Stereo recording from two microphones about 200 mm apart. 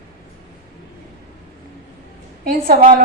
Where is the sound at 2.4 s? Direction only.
45° right (ahead or behind).